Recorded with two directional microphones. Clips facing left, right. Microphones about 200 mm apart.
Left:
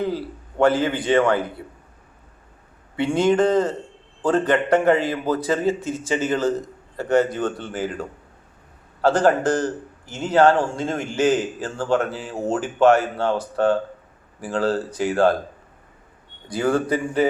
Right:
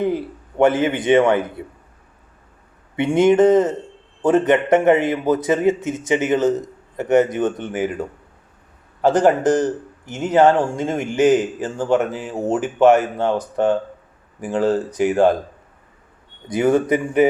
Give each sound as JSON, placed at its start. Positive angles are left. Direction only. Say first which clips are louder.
{"t": 0.0, "sound": "a man's voice", "louder": "right 4 dB", "side_deg": -20}
{"t": 2.9, "sound": "a man's voice", "louder": "right 4 dB", "side_deg": -20}
{"t": 16.5, "sound": "a man's voice", "louder": "right 4 dB", "side_deg": -20}